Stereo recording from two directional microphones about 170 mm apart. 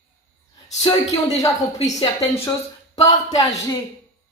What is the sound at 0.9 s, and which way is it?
Speech, 30° left (ahead or behind).